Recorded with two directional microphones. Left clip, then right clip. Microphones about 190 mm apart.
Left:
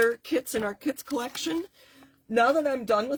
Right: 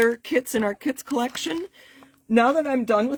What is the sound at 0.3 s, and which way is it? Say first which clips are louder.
Speech: right 5 dB; 45° right (ahead or behind).